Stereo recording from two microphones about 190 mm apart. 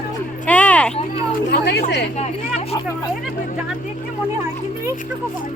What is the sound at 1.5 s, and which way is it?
Chatter, 65° left (ahead or behind).